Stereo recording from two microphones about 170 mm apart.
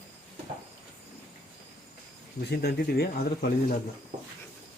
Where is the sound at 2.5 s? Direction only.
70° left (ahead or behind).